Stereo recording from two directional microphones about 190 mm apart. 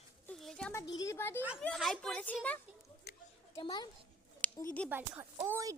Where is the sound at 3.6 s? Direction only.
25° left (ahead or behind).